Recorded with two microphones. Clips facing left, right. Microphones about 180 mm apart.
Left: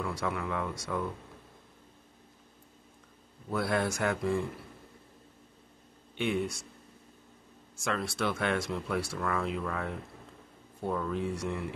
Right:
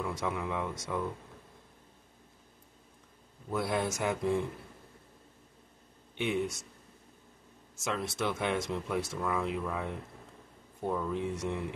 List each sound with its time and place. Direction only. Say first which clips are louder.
0.0 s speech: left 1 dB; 20° right (ahead or behind)
3.5 s speech: left 1 dB; 15° right (ahead or behind)
6.1 s speech: left 1 dB; 15° right (ahead or behind)
7.7 s speech: left 1 dB; 20° right (ahead or behind)